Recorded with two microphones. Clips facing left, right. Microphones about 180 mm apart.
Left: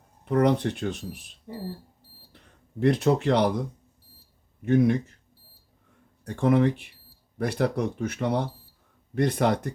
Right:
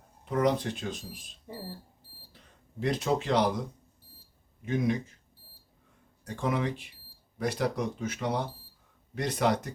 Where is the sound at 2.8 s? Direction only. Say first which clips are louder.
Left 7 dB; 60° left (ahead or behind).